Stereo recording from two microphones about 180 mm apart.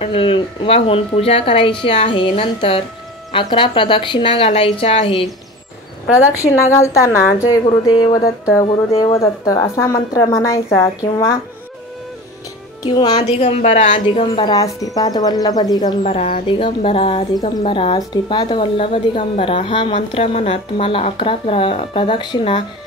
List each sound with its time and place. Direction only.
0.0 s a woman's voice: 30° left (ahead or behind)
6.1 s a woman's voice: 15° left (ahead or behind)
8.9 s speech: 30° left (ahead or behind)
9.2 s a woman's voice: 20° left (ahead or behind)
12.8 s a woman's voice: 20° left (ahead or behind)
13.6 s a woman's voice: 40° left (ahead or behind); by 15.9 s 20° left (ahead or behind)
16.0 s speech: 40° left (ahead or behind)
16.4 s speech: 30° left (ahead or behind)
17.3 s a woman's voice: 20° left (ahead or behind)